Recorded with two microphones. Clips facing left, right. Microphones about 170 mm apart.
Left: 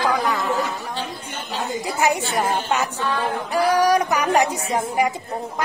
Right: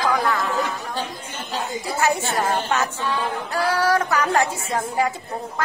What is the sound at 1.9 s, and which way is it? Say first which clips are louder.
Speech: even; 15° left (ahead or behind).